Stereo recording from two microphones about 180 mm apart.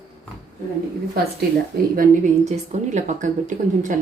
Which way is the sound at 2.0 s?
40° right (ahead or behind).